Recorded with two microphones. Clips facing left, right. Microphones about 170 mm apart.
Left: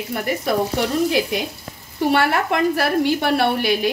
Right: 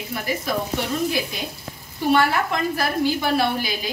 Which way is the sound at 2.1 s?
65° left (ahead or behind).